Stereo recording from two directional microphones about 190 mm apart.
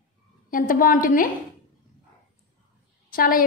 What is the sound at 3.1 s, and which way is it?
Speech, 50° left (ahead or behind).